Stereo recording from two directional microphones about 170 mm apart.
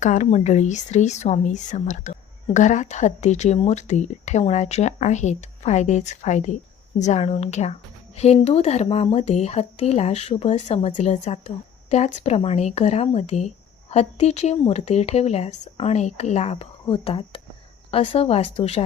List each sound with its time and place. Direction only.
0.0 s a woman's voice: 45° left (ahead or behind)